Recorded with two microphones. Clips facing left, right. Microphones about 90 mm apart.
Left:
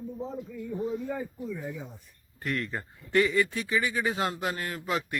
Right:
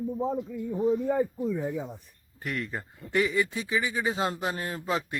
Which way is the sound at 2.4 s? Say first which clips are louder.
Left 1 dB; 10° right (ahead or behind).